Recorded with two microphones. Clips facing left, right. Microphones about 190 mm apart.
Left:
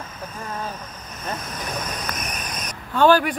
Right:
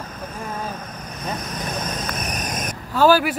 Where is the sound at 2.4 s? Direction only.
50° right (ahead or behind).